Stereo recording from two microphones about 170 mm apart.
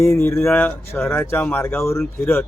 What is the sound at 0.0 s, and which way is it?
A man's voice, 15° left (ahead or behind).